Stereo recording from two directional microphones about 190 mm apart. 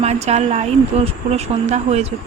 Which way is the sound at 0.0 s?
35° right (ahead or behind).